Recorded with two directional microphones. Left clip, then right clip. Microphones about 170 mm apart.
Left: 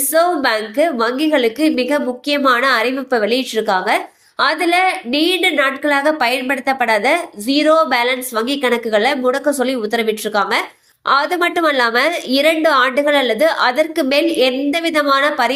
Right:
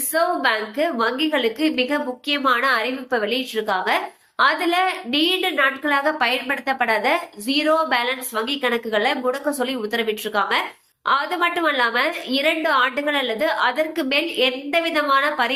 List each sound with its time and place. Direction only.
0.1 s a woman's voice: 25° left (ahead or behind)